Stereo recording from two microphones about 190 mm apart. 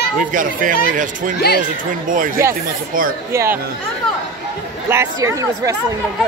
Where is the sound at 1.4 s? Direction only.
55° left (ahead or behind).